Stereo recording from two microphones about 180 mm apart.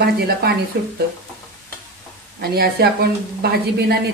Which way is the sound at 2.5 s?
60° right (ahead or behind).